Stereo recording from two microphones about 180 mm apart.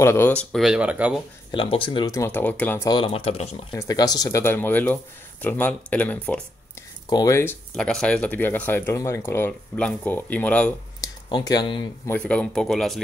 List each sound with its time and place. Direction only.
0.0 s speech: 15° left (ahead or behind); by 1.2 s 5° right (ahead or behind)
1.5 s speech: 30° left (ahead or behind); by 2.9 s 10° left (ahead or behind)
2.9 s speech: 30° left (ahead or behind)
3.7 s speech: 20° left (ahead or behind)
7.1 s speech: 20° left (ahead or behind)
11.0 s speech: 20° left (ahead or behind)
12.1 s speech: 5° left (ahead or behind)